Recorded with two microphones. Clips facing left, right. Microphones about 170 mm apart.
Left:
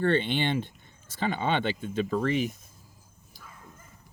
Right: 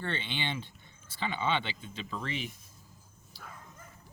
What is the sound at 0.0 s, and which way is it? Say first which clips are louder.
Speech: left 11 dB; 50° left (ahead or behind).